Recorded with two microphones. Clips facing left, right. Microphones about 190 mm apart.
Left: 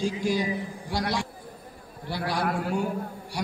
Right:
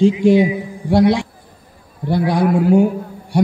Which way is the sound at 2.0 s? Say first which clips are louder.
Right 12 dB; 55° right (ahead or behind).